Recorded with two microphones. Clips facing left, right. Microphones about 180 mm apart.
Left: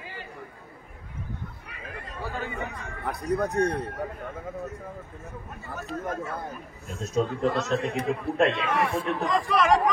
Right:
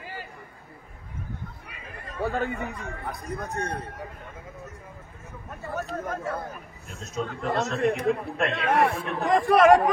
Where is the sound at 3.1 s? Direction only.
70° left (ahead or behind).